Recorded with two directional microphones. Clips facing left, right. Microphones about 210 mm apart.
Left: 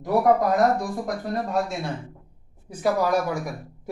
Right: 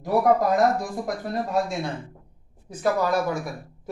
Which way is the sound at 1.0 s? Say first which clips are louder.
Even; centre (ahead or behind).